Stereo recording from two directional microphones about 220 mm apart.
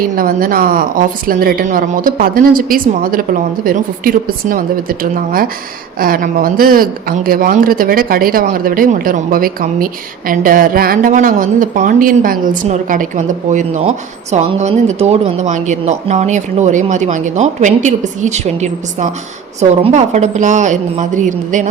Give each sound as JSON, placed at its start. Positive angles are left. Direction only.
{"t": 0.2, "sound": "speech", "side_deg": -40}